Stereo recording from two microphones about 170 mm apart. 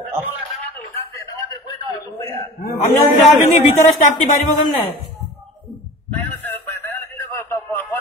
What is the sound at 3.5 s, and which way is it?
Speech, 45° left (ahead or behind).